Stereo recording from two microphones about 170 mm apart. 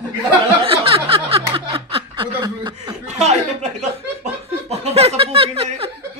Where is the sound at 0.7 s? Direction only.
35° right (ahead or behind).